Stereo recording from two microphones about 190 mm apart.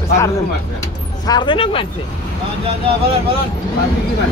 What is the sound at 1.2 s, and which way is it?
Speech, 20° left (ahead or behind).